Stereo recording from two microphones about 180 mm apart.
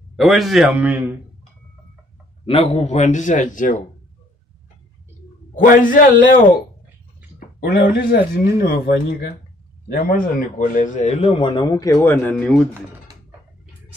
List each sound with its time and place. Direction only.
0.1 s a man's voice: centre (ahead or behind)
2.4 s a man's voice: 30° left (ahead or behind)
5.5 s a man's voice: 50° left (ahead or behind); by 12.6 s 5° left (ahead or behind)